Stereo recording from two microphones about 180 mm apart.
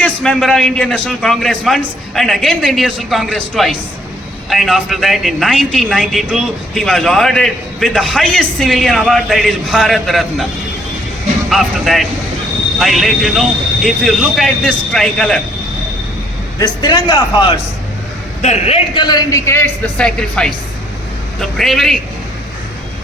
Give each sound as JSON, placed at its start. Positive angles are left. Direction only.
{"t": 0.0, "sound": "speech", "side_deg": 5}
{"t": 11.4, "sound": "speech", "side_deg": 0}
{"t": 16.6, "sound": "a man's voice", "side_deg": 25}
{"t": 21.6, "sound": "speech", "side_deg": 0}